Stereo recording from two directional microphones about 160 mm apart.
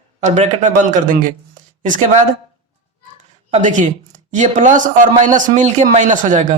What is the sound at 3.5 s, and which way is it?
A man's voice, 50° right (ahead or behind).